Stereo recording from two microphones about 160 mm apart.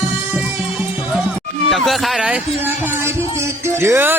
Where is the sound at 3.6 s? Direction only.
15° right (ahead or behind).